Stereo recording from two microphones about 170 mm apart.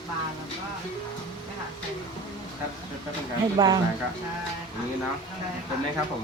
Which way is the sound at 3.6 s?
20° right (ahead or behind).